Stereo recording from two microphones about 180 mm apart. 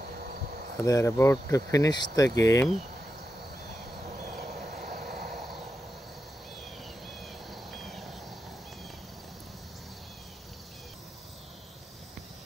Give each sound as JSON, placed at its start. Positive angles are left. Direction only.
{"t": 0.2, "sound": "cricket", "side_deg": -55}
{"t": 0.8, "sound": "speech", "side_deg": 15}
{"t": 4.2, "sound": "a sound", "side_deg": -50}
{"t": 7.2, "sound": "cricket", "side_deg": 0}